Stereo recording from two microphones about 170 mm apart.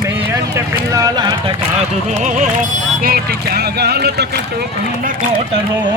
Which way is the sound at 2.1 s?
45° right (ahead or behind).